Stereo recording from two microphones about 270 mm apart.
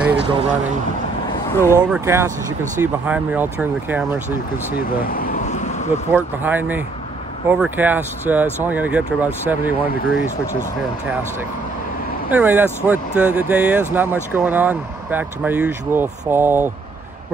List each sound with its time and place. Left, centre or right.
0.3 s speech: right
1.5 s speech: centre
1.9 s speech: centre
5.0 s vehicle: left
6.1 s speech: centre
12.3 s speech: centre